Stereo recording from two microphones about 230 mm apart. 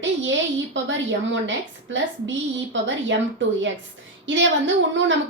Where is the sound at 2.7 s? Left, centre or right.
Right.